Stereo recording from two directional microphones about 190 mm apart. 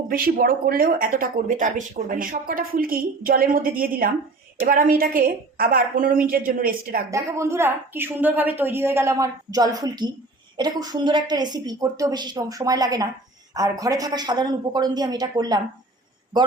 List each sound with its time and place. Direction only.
0.1 s speech: 50° right (ahead or behind)
7.1 s a woman's voice: 15° right (ahead or behind)